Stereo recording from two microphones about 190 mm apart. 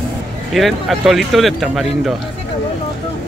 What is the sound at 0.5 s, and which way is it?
Speech, centre (ahead or behind).